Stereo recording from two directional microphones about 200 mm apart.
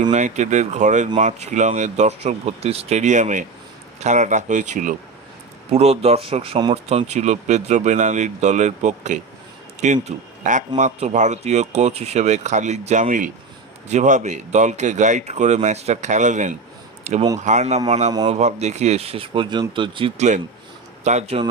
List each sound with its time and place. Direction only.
0.0 s speech: 35° right (ahead or behind)
17.0 s a sound: 35° right (ahead or behind)
17.4 s speech: 35° right (ahead or behind)